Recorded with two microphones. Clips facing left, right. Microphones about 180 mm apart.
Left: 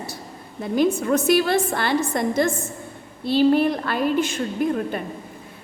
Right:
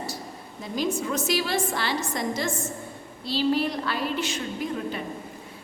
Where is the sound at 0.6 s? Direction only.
60° left (ahead or behind).